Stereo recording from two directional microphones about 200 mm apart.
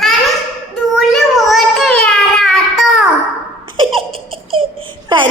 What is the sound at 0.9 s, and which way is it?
Child singing, centre (ahead or behind).